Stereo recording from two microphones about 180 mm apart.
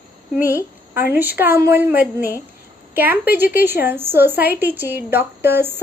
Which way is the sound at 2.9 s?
10° right (ahead or behind).